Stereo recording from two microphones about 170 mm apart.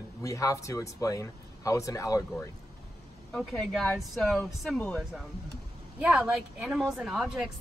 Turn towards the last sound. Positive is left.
turn(degrees=-5)  # may be behind; listen again after turning